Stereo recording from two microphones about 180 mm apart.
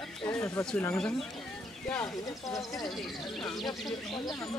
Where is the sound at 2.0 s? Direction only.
20° left (ahead or behind).